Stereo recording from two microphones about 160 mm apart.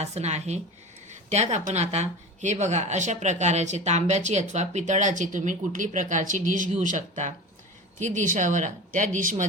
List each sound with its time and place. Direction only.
0.0 s speech: 45° right (ahead or behind)